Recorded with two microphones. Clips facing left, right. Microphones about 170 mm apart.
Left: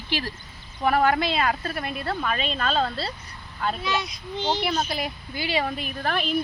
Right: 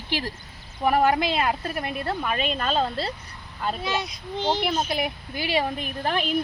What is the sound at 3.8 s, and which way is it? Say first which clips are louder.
Speech: even; 50° right (ahead or behind).